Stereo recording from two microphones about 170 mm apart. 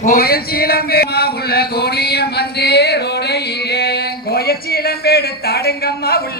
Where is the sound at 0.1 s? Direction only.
65° left (ahead or behind).